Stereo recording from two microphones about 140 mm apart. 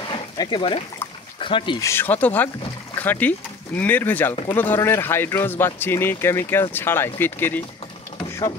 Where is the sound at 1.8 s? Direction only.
20° left (ahead or behind).